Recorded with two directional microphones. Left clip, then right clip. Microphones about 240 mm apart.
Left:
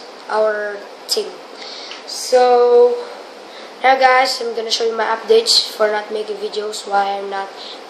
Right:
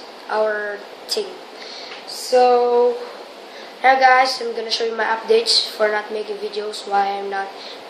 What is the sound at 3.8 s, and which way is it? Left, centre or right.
A woman's voice, centre.